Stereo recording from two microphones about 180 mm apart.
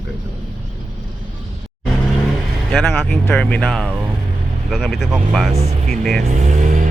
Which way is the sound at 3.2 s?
10° left (ahead or behind).